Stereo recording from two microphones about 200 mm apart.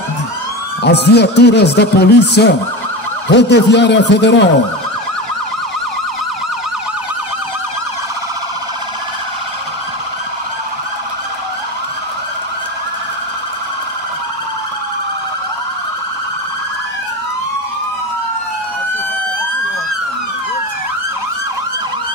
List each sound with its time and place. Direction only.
0.8 s speech: 55° left (ahead or behind)